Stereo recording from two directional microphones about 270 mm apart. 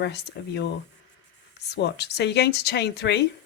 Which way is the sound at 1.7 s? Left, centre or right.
Left.